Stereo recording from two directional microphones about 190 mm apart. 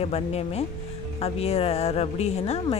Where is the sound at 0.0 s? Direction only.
30° left (ahead or behind).